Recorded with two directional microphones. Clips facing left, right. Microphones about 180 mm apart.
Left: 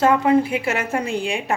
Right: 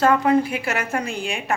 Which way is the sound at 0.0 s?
20° left (ahead or behind).